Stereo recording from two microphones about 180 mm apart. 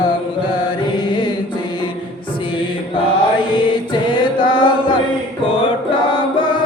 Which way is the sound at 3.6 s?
25° left (ahead or behind).